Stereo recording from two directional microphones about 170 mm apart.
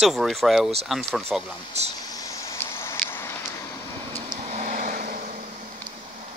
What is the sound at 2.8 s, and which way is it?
Vehicle, 15° left (ahead or behind).